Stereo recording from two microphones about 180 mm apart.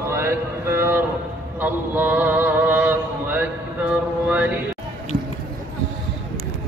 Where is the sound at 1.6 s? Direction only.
10° right (ahead or behind).